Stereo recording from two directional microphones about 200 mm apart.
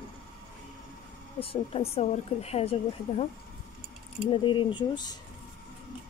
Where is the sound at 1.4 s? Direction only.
30° left (ahead or behind).